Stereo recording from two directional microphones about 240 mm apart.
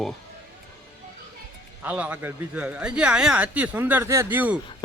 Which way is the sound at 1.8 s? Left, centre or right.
Centre.